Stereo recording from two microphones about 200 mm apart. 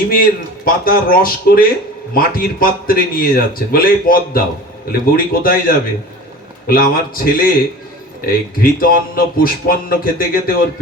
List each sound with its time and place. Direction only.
0.1 s a man's voice: 45° left (ahead or behind)